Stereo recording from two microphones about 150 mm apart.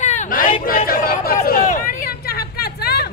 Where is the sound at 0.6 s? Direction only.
75° left (ahead or behind).